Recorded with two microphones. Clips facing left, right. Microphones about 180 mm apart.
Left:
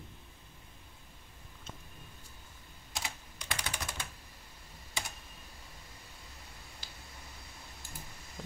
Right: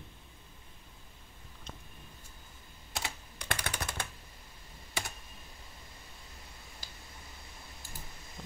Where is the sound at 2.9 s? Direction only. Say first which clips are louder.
Right 2 dB; 60° right (ahead or behind).